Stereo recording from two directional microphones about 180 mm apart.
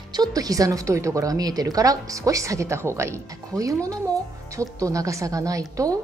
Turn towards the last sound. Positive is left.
turn(degrees=-20)  # may be behind; listen again after turning